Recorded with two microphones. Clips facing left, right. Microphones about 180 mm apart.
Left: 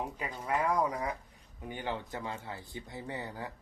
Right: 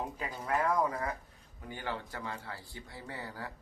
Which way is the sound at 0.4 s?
10° left (ahead or behind).